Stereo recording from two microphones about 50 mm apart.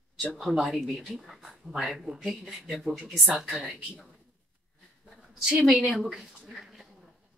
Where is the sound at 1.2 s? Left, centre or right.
Centre.